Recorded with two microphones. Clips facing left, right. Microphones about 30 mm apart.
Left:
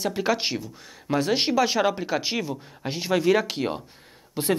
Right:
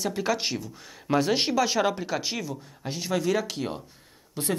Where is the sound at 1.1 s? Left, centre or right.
Centre.